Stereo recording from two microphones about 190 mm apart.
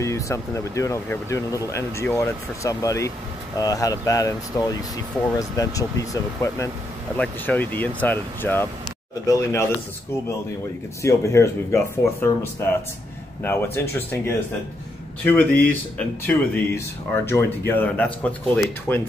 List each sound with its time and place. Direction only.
0.0 s speech: 15° left (ahead or behind)
11.0 s speech: 15° left (ahead or behind)